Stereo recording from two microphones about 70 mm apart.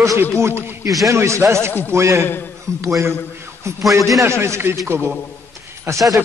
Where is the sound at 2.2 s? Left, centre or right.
Left.